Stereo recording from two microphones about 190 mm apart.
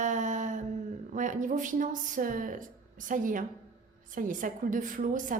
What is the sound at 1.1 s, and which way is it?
A woman's voice, 45° right (ahead or behind).